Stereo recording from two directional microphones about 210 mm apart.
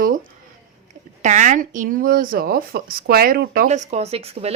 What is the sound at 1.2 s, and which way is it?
Speech, 35° right (ahead or behind).